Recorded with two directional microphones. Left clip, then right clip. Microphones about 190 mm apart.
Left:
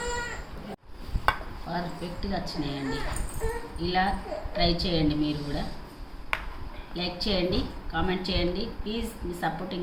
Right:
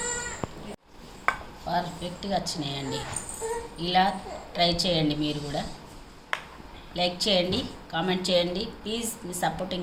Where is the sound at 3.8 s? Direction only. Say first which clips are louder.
Right 3 dB; 40° right (ahead or behind).